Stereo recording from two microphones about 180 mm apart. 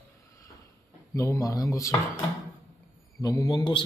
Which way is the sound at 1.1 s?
15° left (ahead or behind).